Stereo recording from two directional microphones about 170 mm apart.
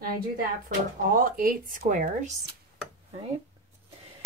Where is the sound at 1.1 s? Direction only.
55° right (ahead or behind).